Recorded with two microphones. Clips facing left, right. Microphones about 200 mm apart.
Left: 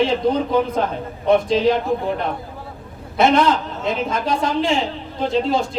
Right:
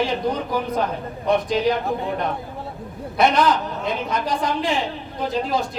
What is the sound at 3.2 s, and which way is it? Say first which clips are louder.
A man's voice: left 2 dB; 25° left (ahead or behind).